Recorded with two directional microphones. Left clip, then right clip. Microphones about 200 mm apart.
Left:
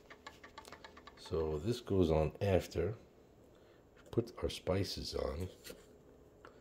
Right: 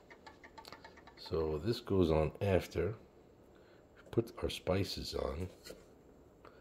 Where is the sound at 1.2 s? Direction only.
5° left (ahead or behind).